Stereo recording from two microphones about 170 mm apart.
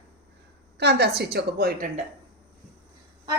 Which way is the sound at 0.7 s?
75° right (ahead or behind).